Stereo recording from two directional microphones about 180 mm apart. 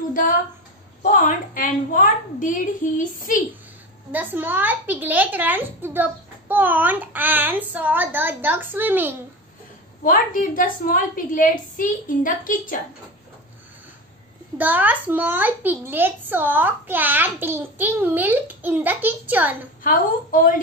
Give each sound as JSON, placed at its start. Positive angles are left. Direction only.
{"t": 0.1, "sound": "a woman's voice", "side_deg": 50}
{"t": 4.1, "sound": "a child's voice", "side_deg": -10}
{"t": 10.0, "sound": "a woman's voice", "side_deg": 50}
{"t": 14.6, "sound": "a child's voice", "side_deg": -10}
{"t": 19.8, "sound": "a woman's voice", "side_deg": 50}